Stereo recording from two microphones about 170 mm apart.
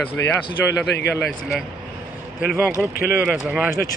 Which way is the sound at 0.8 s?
85° left.